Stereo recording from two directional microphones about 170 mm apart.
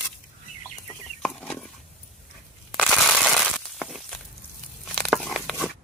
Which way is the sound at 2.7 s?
Centre (ahead or behind).